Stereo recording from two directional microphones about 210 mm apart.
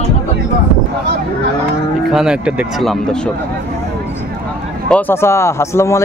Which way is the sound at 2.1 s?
5° right (ahead or behind).